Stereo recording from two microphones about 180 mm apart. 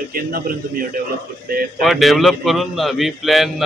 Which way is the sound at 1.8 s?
Centre (ahead or behind).